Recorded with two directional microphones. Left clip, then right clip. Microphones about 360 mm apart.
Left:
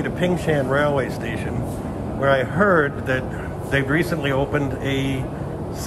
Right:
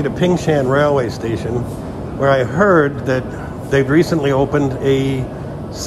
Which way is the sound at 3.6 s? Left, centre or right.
Centre.